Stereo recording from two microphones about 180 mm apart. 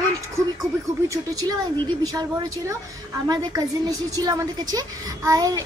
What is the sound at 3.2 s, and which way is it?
A woman's voice, 20° right (ahead or behind).